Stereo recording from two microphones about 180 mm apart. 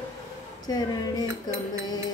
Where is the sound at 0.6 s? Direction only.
20° left (ahead or behind).